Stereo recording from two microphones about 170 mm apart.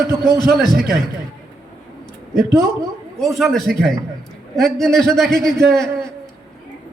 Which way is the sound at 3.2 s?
Centre (ahead or behind).